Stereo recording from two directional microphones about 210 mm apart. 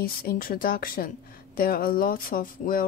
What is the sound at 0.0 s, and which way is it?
A woman's voice, 45° left (ahead or behind).